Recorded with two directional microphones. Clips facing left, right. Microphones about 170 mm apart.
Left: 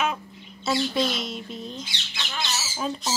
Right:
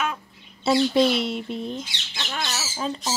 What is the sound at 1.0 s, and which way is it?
Speech, 60° right (ahead or behind).